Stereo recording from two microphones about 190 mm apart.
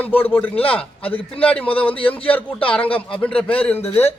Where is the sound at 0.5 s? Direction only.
30° left (ahead or behind).